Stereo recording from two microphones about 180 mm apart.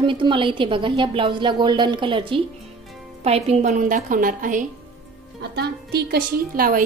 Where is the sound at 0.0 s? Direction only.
25° right (ahead or behind); by 4.6 s 45° right (ahead or behind).